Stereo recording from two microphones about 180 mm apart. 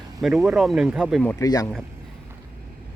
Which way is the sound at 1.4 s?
20° left (ahead or behind).